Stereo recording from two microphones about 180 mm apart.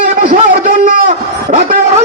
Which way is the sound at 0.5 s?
50° right (ahead or behind).